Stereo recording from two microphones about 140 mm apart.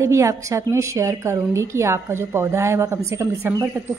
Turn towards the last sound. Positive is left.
turn(degrees=-20)  # may be behind; listen again after turning